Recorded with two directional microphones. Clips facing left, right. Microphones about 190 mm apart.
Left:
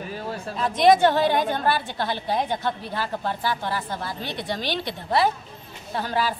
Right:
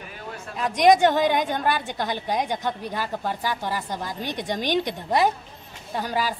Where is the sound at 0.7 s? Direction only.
15° right (ahead or behind).